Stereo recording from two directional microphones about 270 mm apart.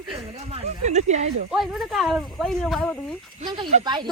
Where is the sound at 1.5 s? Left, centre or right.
Centre.